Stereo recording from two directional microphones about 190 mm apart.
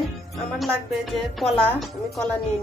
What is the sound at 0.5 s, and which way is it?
Speech, centre (ahead or behind).